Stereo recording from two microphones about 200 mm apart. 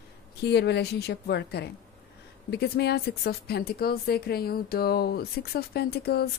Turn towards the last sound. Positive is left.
turn(degrees=50)  # may be behind; listen again after turning